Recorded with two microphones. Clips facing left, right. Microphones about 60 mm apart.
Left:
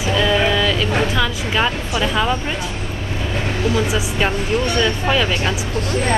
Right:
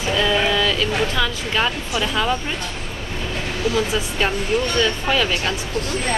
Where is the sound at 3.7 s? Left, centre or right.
Centre.